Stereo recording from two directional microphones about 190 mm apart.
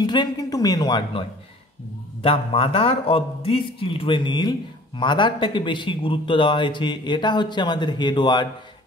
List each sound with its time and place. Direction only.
0.0 s a woman's voice: 25° left (ahead or behind)
2.2 s a man's voice: 30° left (ahead or behind)